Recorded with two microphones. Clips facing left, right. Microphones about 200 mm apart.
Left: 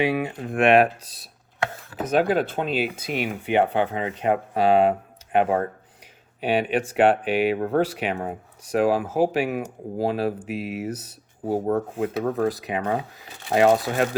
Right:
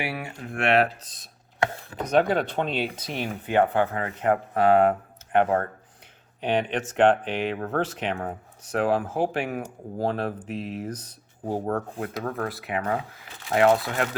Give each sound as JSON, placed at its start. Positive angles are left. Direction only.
{"t": 0.0, "sound": "speech", "side_deg": 20}
{"t": 6.4, "sound": "speech", "side_deg": 10}
{"t": 11.9, "sound": "speech", "side_deg": 25}